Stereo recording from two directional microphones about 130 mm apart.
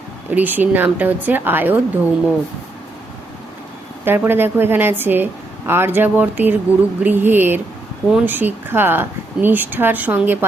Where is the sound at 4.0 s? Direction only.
15° right (ahead or behind).